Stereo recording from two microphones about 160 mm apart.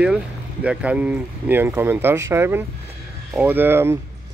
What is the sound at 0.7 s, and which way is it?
Speech, 5° right (ahead or behind).